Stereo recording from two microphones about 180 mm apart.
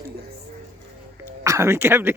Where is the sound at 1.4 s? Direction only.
20° right (ahead or behind).